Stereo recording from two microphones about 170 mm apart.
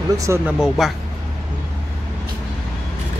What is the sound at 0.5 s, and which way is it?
Speech, 5° right (ahead or behind).